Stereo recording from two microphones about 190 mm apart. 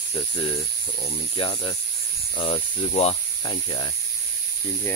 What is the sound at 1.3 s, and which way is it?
Speech, 30° left (ahead or behind).